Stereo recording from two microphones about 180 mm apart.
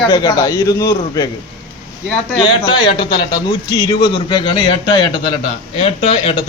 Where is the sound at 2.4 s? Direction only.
30° left (ahead or behind).